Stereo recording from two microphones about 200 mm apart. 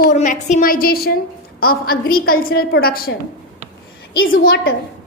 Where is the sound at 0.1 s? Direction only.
40° left (ahead or behind).